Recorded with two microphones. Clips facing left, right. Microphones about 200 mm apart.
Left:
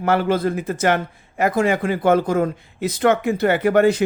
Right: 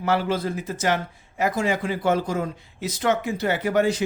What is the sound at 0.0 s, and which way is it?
A man's voice, 55° left (ahead or behind).